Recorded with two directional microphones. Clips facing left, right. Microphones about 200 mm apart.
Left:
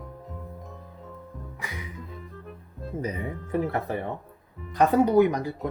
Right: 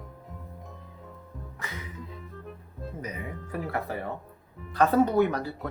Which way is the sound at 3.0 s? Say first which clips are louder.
Left 7 dB; 30° left (ahead or behind).